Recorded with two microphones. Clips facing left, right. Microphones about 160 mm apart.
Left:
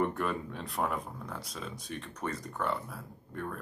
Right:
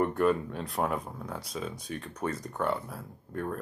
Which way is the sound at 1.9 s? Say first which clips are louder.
Right 1 dB; 40° right (ahead or behind).